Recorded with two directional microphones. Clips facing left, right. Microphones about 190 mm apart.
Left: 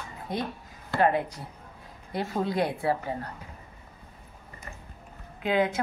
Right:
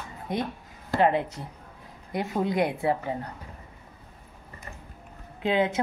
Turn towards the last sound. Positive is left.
turn(degrees=-25)  # may be behind; listen again after turning